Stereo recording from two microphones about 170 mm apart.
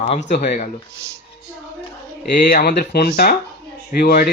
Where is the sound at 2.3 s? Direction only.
55° left (ahead or behind).